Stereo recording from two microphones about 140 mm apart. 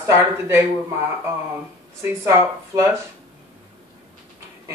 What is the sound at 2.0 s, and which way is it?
Speech, 20° right (ahead or behind).